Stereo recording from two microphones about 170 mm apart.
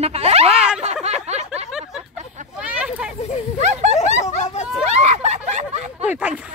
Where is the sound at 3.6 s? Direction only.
40° right (ahead or behind).